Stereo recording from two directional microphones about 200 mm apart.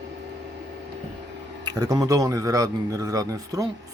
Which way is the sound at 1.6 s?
20° right (ahead or behind).